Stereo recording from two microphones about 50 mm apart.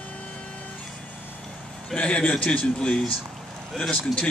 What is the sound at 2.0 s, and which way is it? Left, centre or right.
Speech, left.